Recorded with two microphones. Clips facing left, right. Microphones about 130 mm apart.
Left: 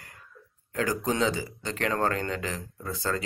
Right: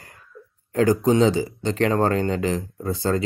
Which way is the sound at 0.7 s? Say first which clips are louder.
Right 10 dB; 35° right (ahead or behind).